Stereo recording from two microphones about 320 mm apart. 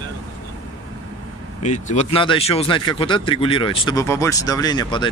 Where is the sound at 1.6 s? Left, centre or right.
Left.